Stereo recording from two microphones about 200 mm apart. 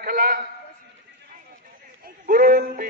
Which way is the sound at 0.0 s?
45° right (ahead or behind).